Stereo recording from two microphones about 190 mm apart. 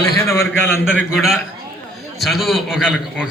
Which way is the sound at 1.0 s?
Centre (ahead or behind).